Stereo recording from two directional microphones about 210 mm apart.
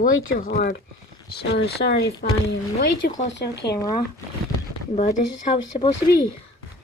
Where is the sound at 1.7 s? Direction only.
50° left (ahead or behind).